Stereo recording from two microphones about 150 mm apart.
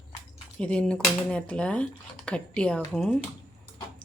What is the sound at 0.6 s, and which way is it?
Speech, 5° left (ahead or behind).